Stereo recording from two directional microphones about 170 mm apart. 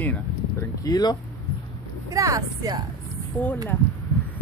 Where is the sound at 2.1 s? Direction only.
20° right (ahead or behind).